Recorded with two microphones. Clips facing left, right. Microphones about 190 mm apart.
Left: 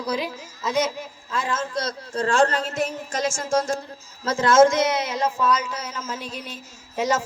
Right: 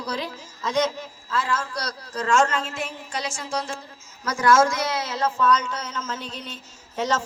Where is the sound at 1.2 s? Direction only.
15° left (ahead or behind); by 3.8 s 45° left (ahead or behind).